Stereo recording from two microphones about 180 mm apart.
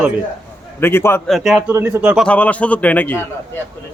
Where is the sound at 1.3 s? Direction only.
Centre (ahead or behind).